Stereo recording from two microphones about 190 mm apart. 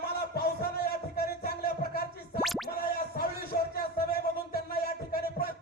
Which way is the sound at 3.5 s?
55° left (ahead or behind).